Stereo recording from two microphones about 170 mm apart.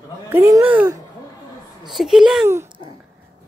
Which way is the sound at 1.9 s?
Centre (ahead or behind).